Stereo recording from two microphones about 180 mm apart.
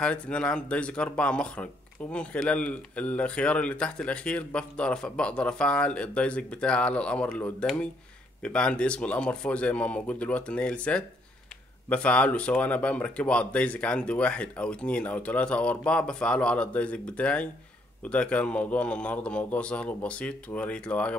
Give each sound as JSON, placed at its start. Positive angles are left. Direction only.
{"t": 0.0, "sound": "speech", "side_deg": 5}